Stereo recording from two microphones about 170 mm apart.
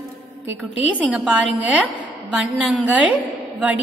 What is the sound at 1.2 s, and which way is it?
A woman's voice, 10° right (ahead or behind).